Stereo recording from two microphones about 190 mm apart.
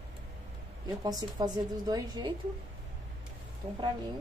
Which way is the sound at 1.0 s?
20° right (ahead or behind).